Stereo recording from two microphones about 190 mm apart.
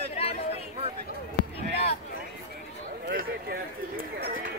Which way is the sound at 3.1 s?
50° right (ahead or behind).